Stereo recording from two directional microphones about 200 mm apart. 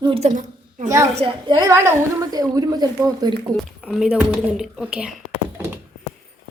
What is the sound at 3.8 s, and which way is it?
A woman's voice, centre (ahead or behind).